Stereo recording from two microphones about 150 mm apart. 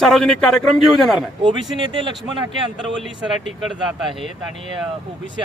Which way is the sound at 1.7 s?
30° right (ahead or behind).